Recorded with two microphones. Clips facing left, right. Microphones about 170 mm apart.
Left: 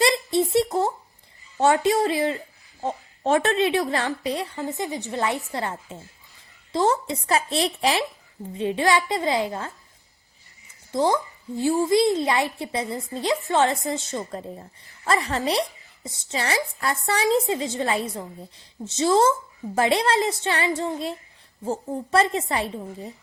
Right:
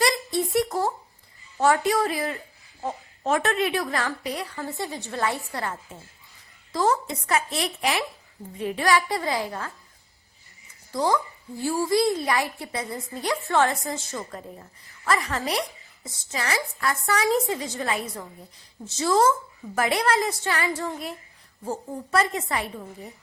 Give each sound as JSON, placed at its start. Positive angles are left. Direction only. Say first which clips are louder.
{"t": 0.0, "sound": "a sound", "louder": "left 3 dB", "side_deg": 25}
{"t": 1.5, "sound": "a woman's voice", "louder": "left 2 dB", "side_deg": 25}
{"t": 10.9, "sound": "a woman's voice", "louder": "left 2 dB", "side_deg": 25}